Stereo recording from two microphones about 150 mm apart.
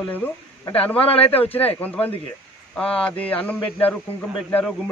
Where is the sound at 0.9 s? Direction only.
40° left (ahead or behind).